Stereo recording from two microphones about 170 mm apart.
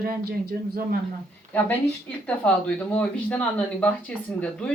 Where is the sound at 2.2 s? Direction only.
10° left (ahead or behind).